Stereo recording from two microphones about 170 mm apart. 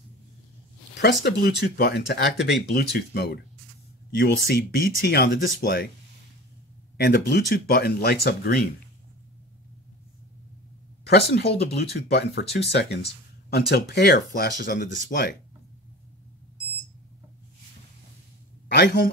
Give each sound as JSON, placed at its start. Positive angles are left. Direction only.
{"t": 1.0, "sound": "speech", "side_deg": 70}
{"t": 7.0, "sound": "speech", "side_deg": 70}
{"t": 11.1, "sound": "speech", "side_deg": 70}
{"t": 18.7, "sound": "a man's voice", "side_deg": 70}